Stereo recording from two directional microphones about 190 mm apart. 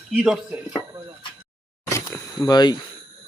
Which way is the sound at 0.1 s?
Centre (ahead or behind).